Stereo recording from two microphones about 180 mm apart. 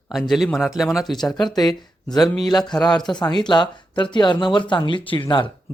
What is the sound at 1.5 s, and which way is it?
Speech, 20° left (ahead or behind).